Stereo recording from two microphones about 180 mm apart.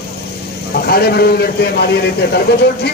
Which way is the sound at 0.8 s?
60° left (ahead or behind).